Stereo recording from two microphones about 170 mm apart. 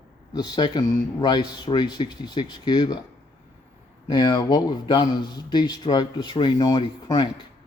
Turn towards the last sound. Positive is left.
turn(degrees=25)  # may be behind; listen again after turning